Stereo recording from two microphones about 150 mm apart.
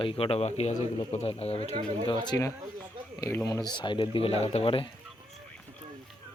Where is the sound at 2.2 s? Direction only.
25° left (ahead or behind).